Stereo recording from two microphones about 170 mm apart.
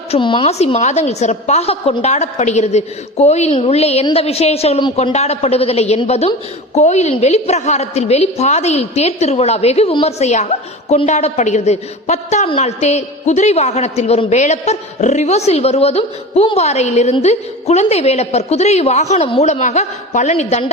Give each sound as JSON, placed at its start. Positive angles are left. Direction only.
{"t": 0.1, "sound": "a woman's voice", "side_deg": 30}